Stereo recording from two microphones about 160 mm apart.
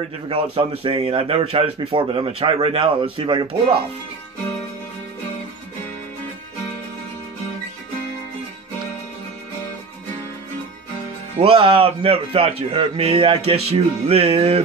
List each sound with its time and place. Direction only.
0.3 s speech: 35° right (ahead or behind)
11.3 s speech: 35° right (ahead or behind)